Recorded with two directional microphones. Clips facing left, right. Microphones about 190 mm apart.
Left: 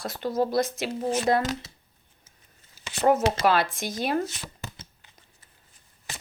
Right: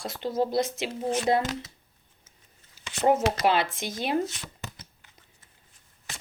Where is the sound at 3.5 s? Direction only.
25° right (ahead or behind).